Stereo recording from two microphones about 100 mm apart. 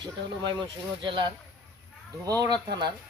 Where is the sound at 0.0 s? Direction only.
50° right (ahead or behind).